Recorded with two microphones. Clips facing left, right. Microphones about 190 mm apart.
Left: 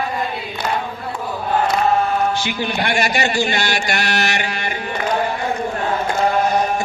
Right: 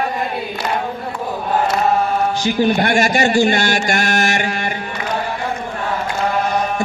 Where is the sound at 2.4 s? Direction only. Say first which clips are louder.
Right 6 dB; 45° right (ahead or behind).